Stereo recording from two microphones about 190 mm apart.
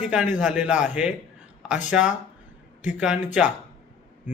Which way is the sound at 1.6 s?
40° left (ahead or behind).